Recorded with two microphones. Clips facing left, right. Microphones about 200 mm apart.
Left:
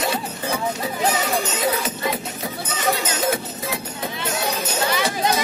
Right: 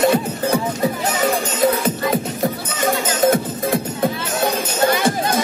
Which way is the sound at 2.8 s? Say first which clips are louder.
Right 6 dB; 50° right (ahead or behind).